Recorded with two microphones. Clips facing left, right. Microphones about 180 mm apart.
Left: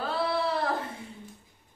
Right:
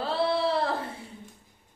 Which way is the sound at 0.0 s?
30° right (ahead or behind).